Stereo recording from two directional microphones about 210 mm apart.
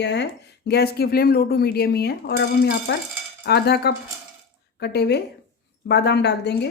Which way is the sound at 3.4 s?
50° left (ahead or behind).